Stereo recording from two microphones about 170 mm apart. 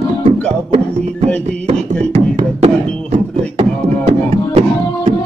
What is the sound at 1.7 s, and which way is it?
Beatboxing, 35° right (ahead or behind).